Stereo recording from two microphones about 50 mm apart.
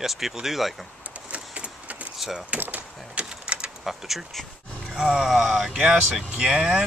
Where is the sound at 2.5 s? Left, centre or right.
Right.